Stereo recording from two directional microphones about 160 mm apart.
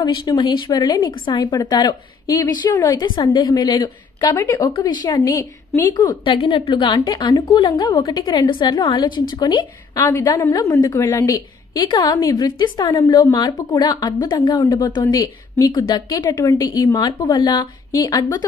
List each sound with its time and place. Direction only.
0.0 s a woman's voice: 25° left (ahead or behind)